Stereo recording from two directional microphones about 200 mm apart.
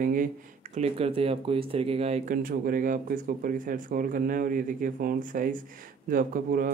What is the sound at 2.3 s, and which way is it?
Speech, 45° right (ahead or behind).